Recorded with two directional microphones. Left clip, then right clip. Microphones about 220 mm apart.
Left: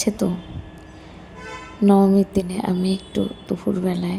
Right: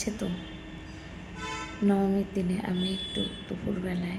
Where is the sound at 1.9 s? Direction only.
30° left (ahead or behind).